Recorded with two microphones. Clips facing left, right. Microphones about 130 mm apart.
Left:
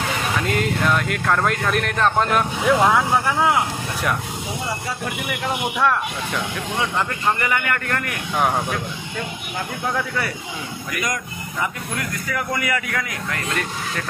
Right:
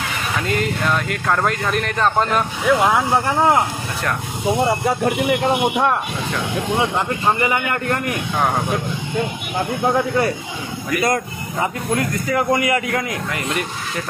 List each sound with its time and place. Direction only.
0.4 s speech: centre (ahead or behind)
3.3 s speech: 40° right (ahead or behind)
4.6 s speech: 55° right (ahead or behind); by 5.6 s 35° right (ahead or behind)
5.6 s speech: 25° right (ahead or behind)
9.8 s speech: 30° right (ahead or behind)
11.6 s speech: 30° right (ahead or behind)
13.3 s speech: 10° right (ahead or behind)